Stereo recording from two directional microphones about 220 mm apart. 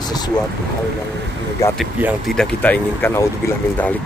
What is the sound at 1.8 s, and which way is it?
A man's voice, 5° right (ahead or behind).